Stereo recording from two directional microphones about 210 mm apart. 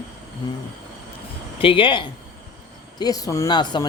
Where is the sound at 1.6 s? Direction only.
25° left (ahead or behind).